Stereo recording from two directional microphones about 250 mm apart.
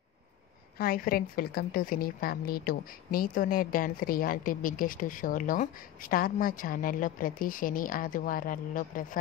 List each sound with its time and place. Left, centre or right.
0.7 s a woman's voice: left